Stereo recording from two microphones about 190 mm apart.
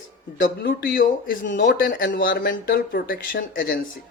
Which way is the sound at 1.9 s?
45° left (ahead or behind).